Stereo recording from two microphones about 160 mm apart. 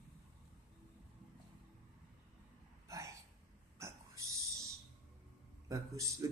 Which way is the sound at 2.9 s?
20° right (ahead or behind).